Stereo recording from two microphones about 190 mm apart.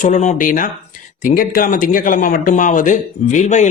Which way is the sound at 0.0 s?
40° left (ahead or behind).